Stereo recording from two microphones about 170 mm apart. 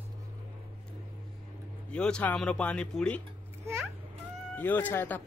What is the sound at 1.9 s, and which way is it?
Speech, 5° left (ahead or behind).